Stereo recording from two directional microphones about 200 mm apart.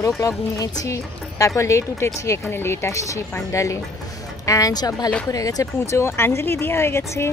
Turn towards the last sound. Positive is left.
turn(degrees=10)  # may be behind; listen again after turning